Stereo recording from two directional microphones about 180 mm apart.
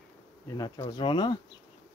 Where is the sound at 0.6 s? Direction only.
25° left (ahead or behind).